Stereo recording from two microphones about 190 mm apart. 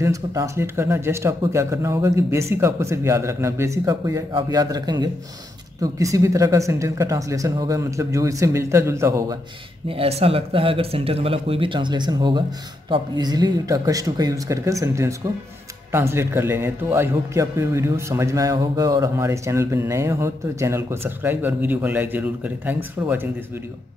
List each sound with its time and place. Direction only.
0.0 s a man's voice: 15° right (ahead or behind)
9.8 s a man's voice: 30° right (ahead or behind); by 23.2 s 10° right (ahead or behind)